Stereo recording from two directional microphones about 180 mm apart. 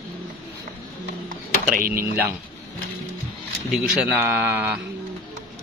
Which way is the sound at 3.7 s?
10° right (ahead or behind).